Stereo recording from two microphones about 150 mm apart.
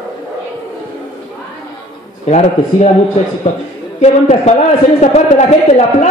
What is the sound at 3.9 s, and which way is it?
A man's voice, 50° left (ahead or behind).